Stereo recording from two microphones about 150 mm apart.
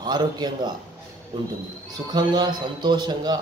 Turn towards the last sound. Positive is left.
turn(degrees=-30)  # may be behind; listen again after turning